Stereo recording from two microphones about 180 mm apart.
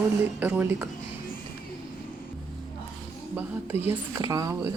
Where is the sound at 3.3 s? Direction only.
10° right (ahead or behind).